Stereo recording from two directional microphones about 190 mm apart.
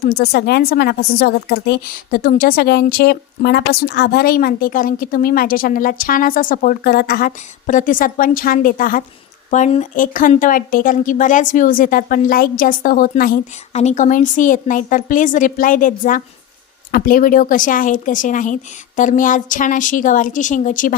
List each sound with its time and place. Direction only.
0.0 s a woman's voice: 55° left (ahead or behind)
9.5 s a woman's voice: 35° left (ahead or behind)
13.7 s a woman's voice: 40° left (ahead or behind)